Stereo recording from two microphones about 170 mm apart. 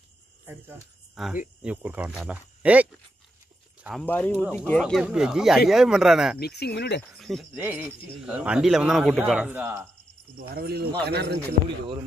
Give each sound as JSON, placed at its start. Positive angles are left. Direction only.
{"t": 1.1, "sound": "speech", "side_deg": 0}
{"t": 4.0, "sound": "a man's voice", "side_deg": 10}
{"t": 6.4, "sound": "speech", "side_deg": 70}
{"t": 7.1, "sound": "a man's voice", "side_deg": 0}
{"t": 7.5, "sound": "a man's voice", "side_deg": -10}
{"t": 10.5, "sound": "speech", "side_deg": -65}